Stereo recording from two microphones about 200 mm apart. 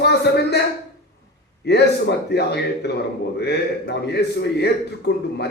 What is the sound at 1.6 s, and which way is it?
A man's voice, 55° left (ahead or behind).